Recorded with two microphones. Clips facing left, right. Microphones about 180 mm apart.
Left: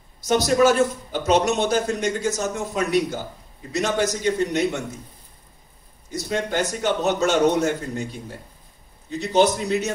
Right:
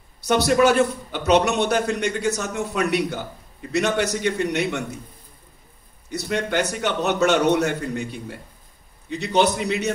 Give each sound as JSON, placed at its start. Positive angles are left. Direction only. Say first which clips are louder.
{"t": 0.3, "sound": "a man's voice", "louder": "even", "side_deg": -65}
{"t": 6.0, "sound": "a man's voice", "louder": "right 1 dB", "side_deg": -65}
{"t": 9.2, "sound": "a man's voice", "louder": "left 1 dB", "side_deg": -65}